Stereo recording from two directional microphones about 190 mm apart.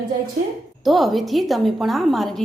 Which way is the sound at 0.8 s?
Centre (ahead or behind).